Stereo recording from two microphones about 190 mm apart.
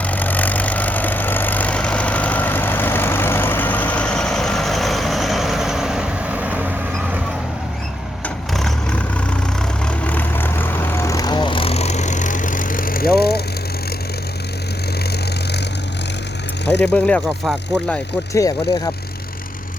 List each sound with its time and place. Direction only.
0.0 s vehicle: 10° left (ahead or behind); by 6.7 s 5° right (ahead or behind)
8.5 s vehicle: 5° left (ahead or behind); by 13.4 s 55° left (ahead or behind)
16.8 s speech: 5° left (ahead or behind)
18.3 s speech: 20° left (ahead or behind)